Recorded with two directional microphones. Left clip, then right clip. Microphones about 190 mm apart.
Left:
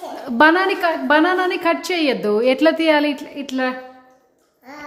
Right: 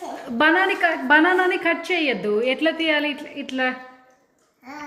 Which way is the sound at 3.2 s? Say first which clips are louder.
Left 2 dB; 15° left (ahead or behind).